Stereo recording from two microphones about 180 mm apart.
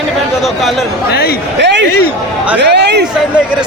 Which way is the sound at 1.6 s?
75° right (ahead or behind).